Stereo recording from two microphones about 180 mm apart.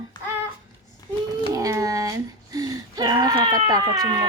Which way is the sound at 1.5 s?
20° right (ahead or behind).